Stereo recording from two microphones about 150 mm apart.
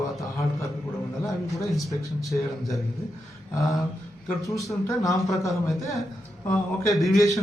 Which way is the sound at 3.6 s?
25° left (ahead or behind).